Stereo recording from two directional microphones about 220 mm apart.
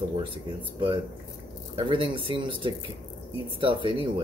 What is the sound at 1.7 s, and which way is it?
Speech, 20° right (ahead or behind).